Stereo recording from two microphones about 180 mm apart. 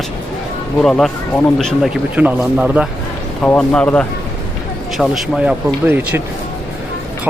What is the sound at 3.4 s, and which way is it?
Speech, 5° left (ahead or behind).